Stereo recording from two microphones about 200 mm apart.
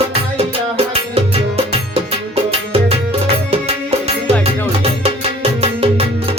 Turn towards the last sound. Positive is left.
turn(degrees=-30)  # may be behind; listen again after turning